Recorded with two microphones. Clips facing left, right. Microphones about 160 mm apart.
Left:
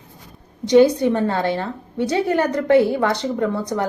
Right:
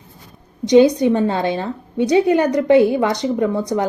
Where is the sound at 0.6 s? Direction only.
15° right (ahead or behind).